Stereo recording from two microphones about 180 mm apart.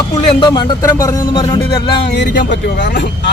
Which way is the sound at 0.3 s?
25° left (ahead or behind).